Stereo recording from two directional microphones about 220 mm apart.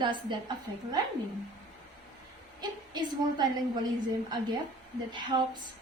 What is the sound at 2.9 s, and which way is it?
Speech, 20° right (ahead or behind).